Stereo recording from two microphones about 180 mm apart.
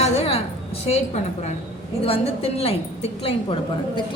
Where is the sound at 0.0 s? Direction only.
35° left (ahead or behind).